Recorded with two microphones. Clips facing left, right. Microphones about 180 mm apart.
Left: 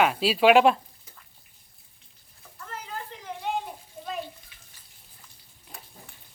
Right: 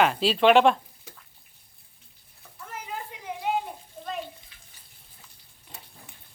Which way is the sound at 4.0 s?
10° left (ahead or behind).